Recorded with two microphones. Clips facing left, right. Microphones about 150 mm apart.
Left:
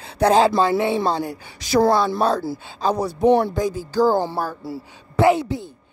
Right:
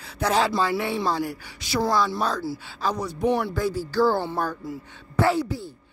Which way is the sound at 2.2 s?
30° left (ahead or behind).